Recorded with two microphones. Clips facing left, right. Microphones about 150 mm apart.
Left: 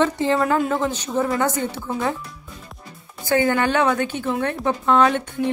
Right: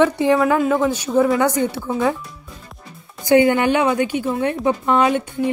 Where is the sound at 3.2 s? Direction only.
15° right (ahead or behind).